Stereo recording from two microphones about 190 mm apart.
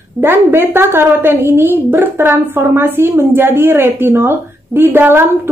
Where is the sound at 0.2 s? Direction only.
10° right (ahead or behind).